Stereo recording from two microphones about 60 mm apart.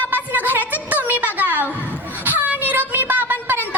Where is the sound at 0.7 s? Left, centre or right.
Right.